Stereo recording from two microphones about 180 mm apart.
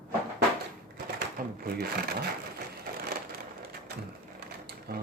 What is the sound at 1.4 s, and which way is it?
Shuffling cards, 50° right (ahead or behind).